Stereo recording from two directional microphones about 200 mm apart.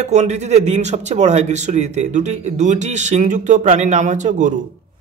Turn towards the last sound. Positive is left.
turn(degrees=-40)  # may be behind; listen again after turning